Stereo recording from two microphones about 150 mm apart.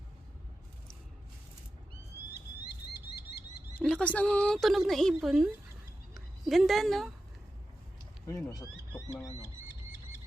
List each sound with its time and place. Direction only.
3.8 s a woman's voice: 10° left (ahead or behind)
6.5 s a woman's voice: centre (ahead or behind)
8.3 s speech: 20° left (ahead or behind)